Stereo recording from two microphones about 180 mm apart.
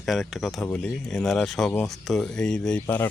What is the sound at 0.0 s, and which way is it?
A man's voice, centre (ahead or behind).